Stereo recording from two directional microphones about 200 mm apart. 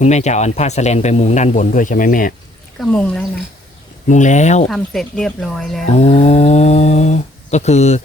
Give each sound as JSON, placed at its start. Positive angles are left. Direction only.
{"t": 0.0, "sound": "speech", "side_deg": 35}
{"t": 2.8, "sound": "speech", "side_deg": 5}
{"t": 4.1, "sound": "speech", "side_deg": 35}
{"t": 4.7, "sound": "speech", "side_deg": 0}
{"t": 5.8, "sound": "speech", "side_deg": 35}